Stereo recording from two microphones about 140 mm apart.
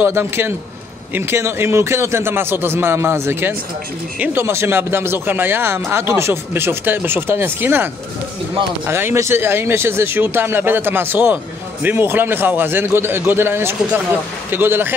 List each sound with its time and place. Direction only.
0.0 s speech: 15° right (ahead or behind)